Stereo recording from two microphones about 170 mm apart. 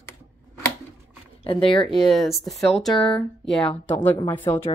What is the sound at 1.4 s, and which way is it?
Speech, 30° left (ahead or behind).